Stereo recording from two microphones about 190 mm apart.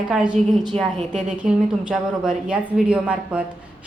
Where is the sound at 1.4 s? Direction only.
5° right (ahead or behind).